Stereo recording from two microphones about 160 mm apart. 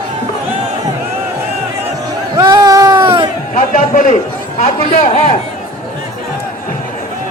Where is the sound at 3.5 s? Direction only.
50° left (ahead or behind).